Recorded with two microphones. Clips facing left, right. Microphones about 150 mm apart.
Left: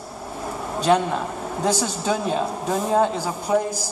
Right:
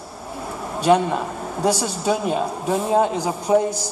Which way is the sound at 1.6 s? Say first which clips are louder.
Right 2 dB; 10° right (ahead or behind).